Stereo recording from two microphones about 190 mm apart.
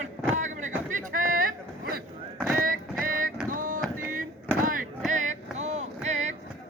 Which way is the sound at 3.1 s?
50° right (ahead or behind).